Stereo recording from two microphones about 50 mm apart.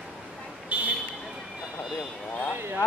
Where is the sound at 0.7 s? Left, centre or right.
Right.